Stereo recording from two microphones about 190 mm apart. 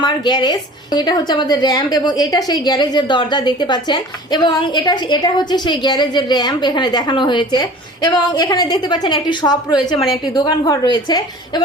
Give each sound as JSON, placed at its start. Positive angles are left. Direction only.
{"t": 0.0, "sound": "a woman's voice", "side_deg": 20}